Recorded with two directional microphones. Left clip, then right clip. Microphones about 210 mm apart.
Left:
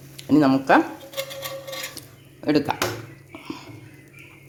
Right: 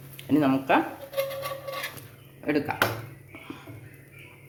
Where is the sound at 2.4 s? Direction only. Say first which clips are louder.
Left 5 dB; 30° left (ahead or behind).